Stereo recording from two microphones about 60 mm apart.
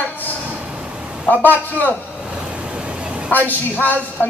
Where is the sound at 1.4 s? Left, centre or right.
Left.